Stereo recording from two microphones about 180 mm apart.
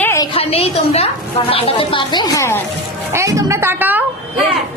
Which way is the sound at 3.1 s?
15° right (ahead or behind).